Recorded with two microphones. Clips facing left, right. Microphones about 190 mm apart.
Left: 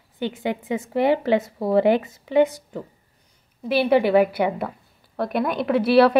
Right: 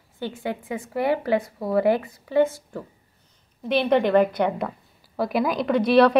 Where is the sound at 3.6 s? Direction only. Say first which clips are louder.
Left 2 dB; 5° left (ahead or behind).